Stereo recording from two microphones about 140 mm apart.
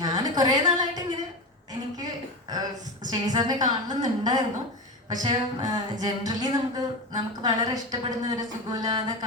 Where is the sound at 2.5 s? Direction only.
25° right (ahead or behind).